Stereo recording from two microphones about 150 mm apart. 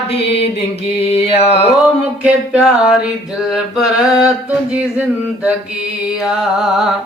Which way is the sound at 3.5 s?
Centre (ahead or behind).